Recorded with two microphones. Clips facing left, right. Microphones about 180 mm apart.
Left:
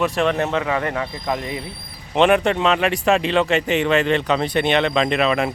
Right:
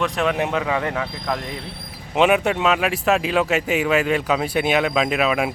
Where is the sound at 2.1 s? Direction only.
5° right (ahead or behind).